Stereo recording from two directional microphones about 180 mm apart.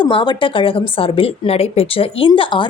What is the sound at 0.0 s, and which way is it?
A woman's voice, 25° left (ahead or behind).